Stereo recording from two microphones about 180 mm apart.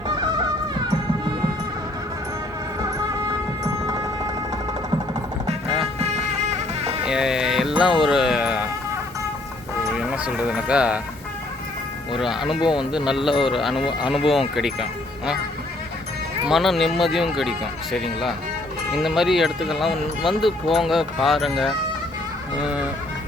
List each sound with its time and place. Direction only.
0.2 s music: 20° right (ahead or behind)
2.8 s music: 15° right (ahead or behind)
5.6 s music: centre (ahead or behind)
6.0 s music: 40° right (ahead or behind)
7.0 s music: 5° right (ahead or behind)
9.9 s speech: 5° right (ahead or behind)
12.2 s speech: centre (ahead or behind)
16.5 s speech: centre (ahead or behind)